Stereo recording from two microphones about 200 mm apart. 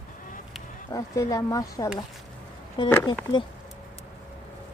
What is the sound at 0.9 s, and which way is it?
Speech, 15° left (ahead or behind).